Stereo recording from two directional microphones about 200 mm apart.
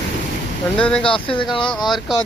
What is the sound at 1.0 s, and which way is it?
Speech, 25° left (ahead or behind).